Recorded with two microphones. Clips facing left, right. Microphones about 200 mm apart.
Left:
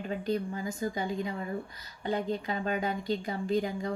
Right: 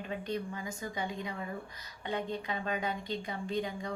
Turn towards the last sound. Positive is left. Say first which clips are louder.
# left 5 dB
turn(degrees=35)  # may be behind; listen again after turning